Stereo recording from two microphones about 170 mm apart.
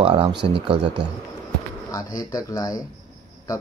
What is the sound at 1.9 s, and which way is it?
Speech, 20° left (ahead or behind).